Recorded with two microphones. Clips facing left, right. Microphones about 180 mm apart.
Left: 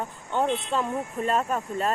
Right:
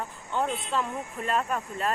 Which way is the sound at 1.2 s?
35° left (ahead or behind).